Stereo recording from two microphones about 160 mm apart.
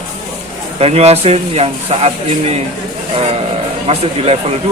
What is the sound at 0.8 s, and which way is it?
Speech, 40° right (ahead or behind).